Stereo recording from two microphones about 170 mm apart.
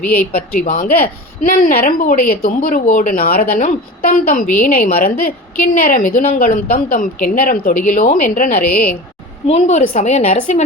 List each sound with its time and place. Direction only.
0.3 s a woman's voice: 50° left (ahead or behind)
9.5 s a woman's voice: 40° left (ahead or behind)